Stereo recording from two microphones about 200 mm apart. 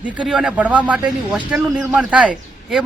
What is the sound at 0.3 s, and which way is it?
A man's voice, 5° right (ahead or behind).